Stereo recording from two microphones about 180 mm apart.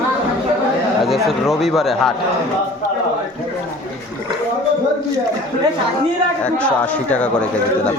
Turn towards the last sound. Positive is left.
turn(degrees=5)  # may be behind; listen again after turning